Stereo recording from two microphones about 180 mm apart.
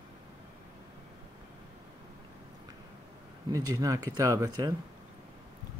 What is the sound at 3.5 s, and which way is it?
Speech, 20° right (ahead or behind).